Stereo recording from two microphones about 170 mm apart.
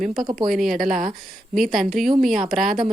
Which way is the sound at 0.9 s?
50° right (ahead or behind).